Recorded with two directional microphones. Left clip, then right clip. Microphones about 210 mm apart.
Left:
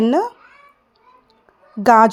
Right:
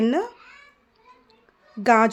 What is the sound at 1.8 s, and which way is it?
Speech, 20° left (ahead or behind).